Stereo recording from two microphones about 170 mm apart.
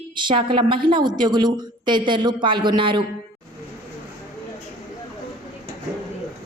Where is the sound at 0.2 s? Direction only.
30° right (ahead or behind).